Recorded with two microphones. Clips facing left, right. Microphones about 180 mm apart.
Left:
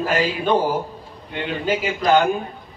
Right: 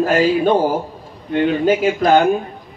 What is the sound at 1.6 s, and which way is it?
Speech, 50° right (ahead or behind).